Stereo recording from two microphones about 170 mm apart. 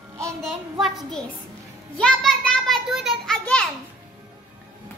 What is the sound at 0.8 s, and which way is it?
Speech, centre (ahead or behind).